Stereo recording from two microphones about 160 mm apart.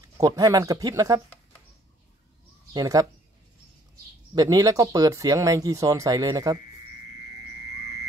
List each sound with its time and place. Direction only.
0.2 s speech: 20° right (ahead or behind)
2.7 s speech: 20° right (ahead or behind)
4.4 s speech: 20° right (ahead or behind)